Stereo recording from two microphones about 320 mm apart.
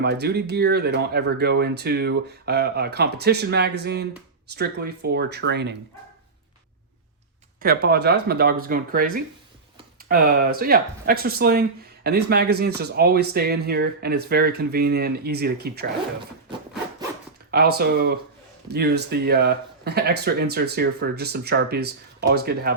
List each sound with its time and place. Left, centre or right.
0.0 s speech: right
7.6 s speech: right
17.5 s speech: right